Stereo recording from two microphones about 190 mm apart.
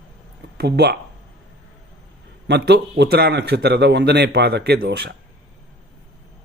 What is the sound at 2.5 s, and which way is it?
A man's voice, 60° right (ahead or behind).